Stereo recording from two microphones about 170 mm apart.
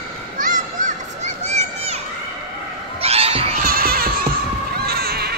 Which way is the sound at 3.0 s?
35° right (ahead or behind).